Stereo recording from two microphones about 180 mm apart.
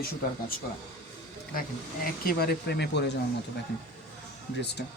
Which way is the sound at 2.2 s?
60° left (ahead or behind).